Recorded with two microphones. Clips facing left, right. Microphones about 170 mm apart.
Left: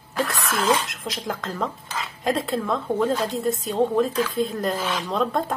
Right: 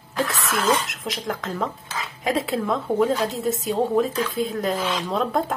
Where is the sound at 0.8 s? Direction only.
Centre (ahead or behind).